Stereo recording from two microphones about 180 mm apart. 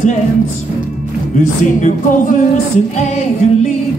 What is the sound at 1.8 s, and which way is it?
Music, 45° left (ahead or behind).